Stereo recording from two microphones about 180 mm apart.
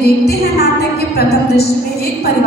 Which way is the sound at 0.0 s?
60° left (ahead or behind).